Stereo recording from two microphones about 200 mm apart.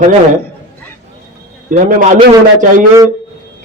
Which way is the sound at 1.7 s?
45° right (ahead or behind).